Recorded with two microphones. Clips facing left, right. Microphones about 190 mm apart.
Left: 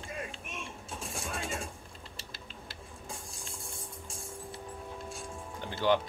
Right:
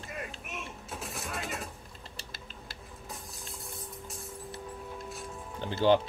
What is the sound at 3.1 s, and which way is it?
Music, 30° left (ahead or behind).